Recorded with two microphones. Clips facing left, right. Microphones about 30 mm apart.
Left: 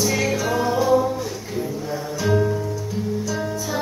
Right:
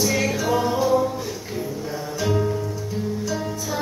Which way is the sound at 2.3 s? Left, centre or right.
Centre.